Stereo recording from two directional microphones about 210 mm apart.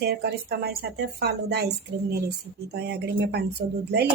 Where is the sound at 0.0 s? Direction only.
50° right (ahead or behind).